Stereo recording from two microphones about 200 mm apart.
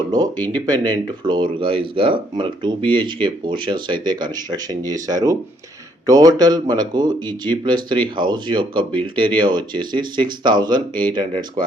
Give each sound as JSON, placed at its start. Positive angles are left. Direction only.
{"t": 0.5, "sound": "speech", "side_deg": -20}